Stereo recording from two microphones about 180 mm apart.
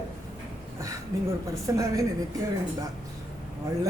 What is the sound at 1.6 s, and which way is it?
Speech, 15° right (ahead or behind).